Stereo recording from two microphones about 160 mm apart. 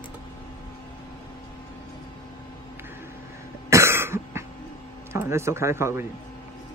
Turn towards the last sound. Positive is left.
turn(degrees=-15)  # may be behind; listen again after turning